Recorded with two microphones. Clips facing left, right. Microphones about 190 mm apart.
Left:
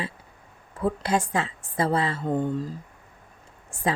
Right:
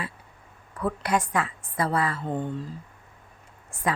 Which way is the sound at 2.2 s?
40° left (ahead or behind).